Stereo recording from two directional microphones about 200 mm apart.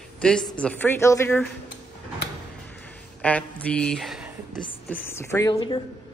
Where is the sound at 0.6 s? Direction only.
5° left (ahead or behind).